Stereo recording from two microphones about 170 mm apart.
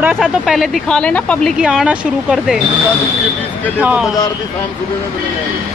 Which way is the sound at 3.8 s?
5° right (ahead or behind).